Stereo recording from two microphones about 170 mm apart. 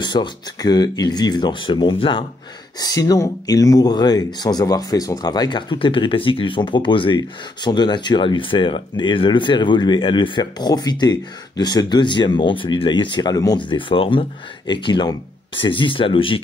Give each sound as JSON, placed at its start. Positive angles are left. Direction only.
{"t": 0.0, "sound": "speech", "side_deg": 25}